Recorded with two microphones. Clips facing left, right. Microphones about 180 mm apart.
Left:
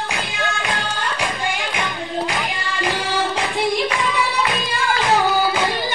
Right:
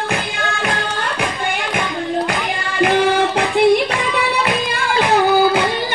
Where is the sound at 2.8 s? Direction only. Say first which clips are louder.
Right 8 dB; 60° right (ahead or behind).